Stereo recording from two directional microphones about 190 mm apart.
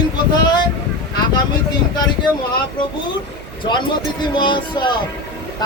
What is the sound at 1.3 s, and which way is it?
Speech, 20° left (ahead or behind).